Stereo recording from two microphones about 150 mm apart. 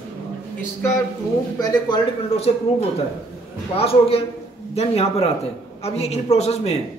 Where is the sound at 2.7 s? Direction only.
40° left (ahead or behind).